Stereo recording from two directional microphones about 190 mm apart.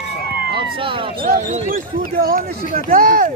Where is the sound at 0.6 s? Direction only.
25° right (ahead or behind).